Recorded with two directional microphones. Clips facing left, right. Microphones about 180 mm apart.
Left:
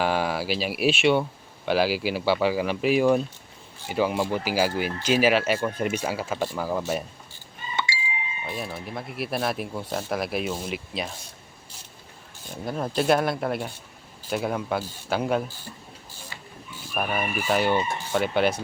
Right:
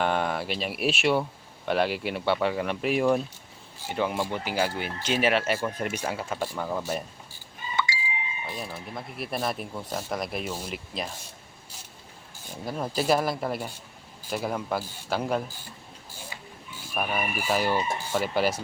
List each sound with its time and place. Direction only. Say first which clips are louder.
0.0 s speech: left 2 dB; 5° left (ahead or behind)
7.9 s a sound: left 1 dB; 25° left (ahead or behind)
8.4 s speech: left 6 dB; 5° left (ahead or behind)
12.6 s speech: left 3 dB; centre (ahead or behind)
16.9 s speech: left 2 dB; centre (ahead or behind)